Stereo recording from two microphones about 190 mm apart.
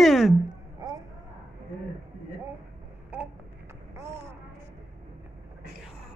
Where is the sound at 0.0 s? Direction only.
Centre (ahead or behind).